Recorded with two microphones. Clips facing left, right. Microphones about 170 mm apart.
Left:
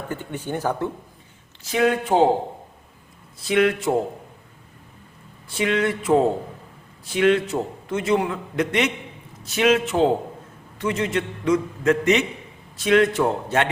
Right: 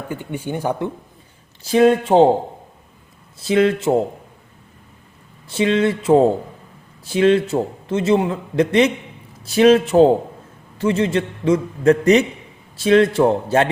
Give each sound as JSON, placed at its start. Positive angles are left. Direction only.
{"t": 0.1, "sound": "speech", "side_deg": -10}
{"t": 1.6, "sound": "a man's voice", "side_deg": -30}
{"t": 3.4, "sound": "a man's voice", "side_deg": -30}
{"t": 5.5, "sound": "a man's voice", "side_deg": -25}